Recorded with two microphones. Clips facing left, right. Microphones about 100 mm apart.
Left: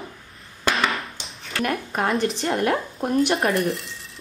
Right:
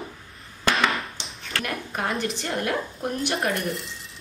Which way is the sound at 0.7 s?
Centre (ahead or behind).